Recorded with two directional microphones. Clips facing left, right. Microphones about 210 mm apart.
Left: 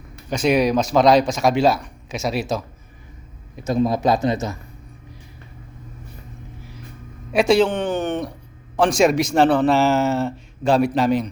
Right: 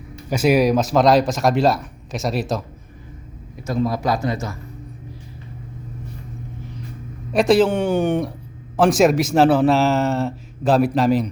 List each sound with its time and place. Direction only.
0.3 s a man's voice: 5° right (ahead or behind)
3.5 s a man's voice: 20° left (ahead or behind)
7.3 s a man's voice: centre (ahead or behind)